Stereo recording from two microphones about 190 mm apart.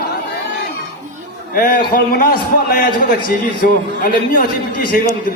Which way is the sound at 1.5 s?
45° left (ahead or behind).